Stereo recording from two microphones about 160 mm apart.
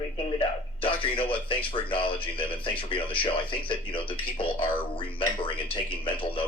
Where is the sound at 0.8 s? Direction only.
35° left (ahead or behind).